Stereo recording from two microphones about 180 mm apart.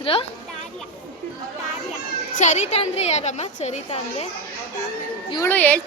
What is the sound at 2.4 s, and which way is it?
A woman's voice, 40° left (ahead or behind).